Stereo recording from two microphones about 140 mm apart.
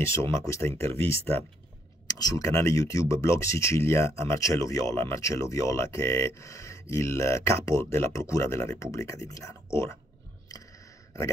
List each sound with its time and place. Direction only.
0.0 s speech: 20° left (ahead or behind)